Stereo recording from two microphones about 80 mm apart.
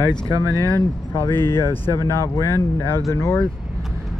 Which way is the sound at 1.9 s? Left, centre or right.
Left.